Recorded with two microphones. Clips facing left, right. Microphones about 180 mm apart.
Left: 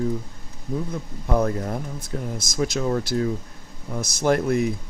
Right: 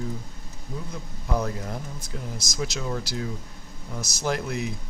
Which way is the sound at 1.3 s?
50° left (ahead or behind).